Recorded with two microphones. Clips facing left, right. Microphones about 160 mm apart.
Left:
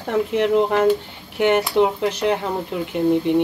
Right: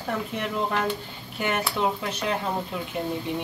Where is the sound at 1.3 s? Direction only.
75° left (ahead or behind).